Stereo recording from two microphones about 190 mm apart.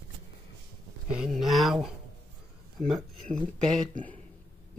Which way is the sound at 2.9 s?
Centre (ahead or behind).